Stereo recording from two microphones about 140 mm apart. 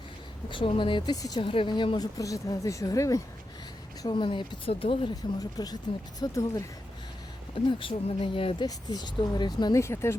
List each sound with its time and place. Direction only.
0.5 s speech: 35° left (ahead or behind)
1.4 s speech: 40° left (ahead or behind)
2.1 s speech: 25° left (ahead or behind)
4.0 s speech: 35° left (ahead or behind)
5.1 s speech: 25° left (ahead or behind)
7.7 s speech: 40° left (ahead or behind)
8.6 s speech: 30° left (ahead or behind)
9.8 s speech: 20° left (ahead or behind)